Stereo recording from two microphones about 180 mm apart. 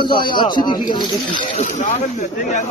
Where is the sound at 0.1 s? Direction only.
25° left (ahead or behind).